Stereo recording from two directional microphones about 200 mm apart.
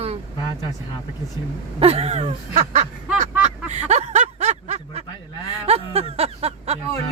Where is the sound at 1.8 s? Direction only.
30° right (ahead or behind).